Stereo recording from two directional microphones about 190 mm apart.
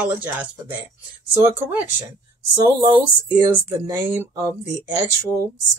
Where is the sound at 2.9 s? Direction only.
20° right (ahead or behind).